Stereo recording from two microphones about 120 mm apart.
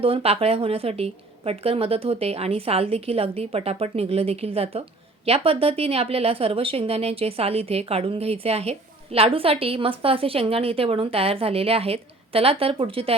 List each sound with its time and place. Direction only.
0.0 s a woman's voice: 50° right (ahead or behind)